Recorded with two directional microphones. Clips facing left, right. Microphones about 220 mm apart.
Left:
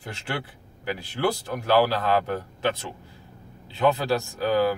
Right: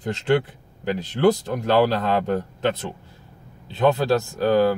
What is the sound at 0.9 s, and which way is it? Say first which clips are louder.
A man's voice: right 8 dB; 20° right (ahead or behind).